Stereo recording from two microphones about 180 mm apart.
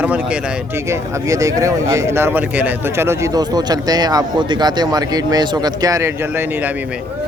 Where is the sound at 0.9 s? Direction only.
15° right (ahead or behind).